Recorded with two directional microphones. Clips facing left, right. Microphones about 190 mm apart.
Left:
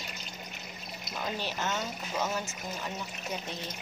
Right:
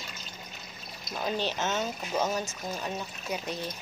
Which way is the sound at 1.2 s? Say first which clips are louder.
Right 4 dB; 20° right (ahead or behind).